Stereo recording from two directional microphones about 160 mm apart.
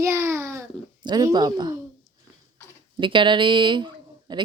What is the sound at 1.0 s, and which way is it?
Speech, 25° right (ahead or behind).